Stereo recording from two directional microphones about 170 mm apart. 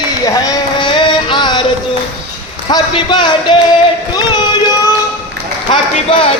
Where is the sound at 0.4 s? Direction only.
25° left (ahead or behind).